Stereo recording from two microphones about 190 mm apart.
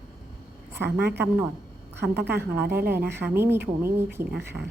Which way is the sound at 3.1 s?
10° right (ahead or behind).